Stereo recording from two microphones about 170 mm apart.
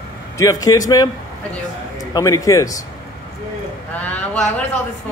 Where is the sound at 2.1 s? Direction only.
20° left (ahead or behind).